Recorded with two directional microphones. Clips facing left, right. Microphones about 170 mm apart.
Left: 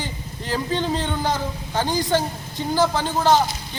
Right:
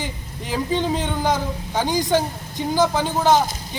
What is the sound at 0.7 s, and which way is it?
A man's voice, 10° right (ahead or behind).